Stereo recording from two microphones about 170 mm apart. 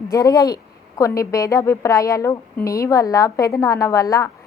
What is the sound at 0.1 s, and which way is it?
A woman's voice, 20° left (ahead or behind).